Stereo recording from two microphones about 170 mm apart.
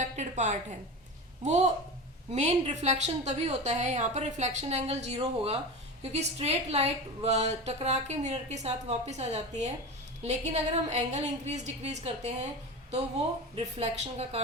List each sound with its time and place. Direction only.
0.0 s a sound: 45° right (ahead or behind)
1.5 s a woman's voice: 40° right (ahead or behind)
13.7 s a woman's voice: 40° right (ahead or behind)